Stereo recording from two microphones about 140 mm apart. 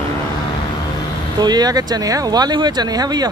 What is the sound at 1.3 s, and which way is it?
Speech, 30° right (ahead or behind).